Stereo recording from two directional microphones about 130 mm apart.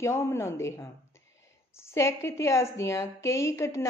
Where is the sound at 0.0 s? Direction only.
20° left (ahead or behind).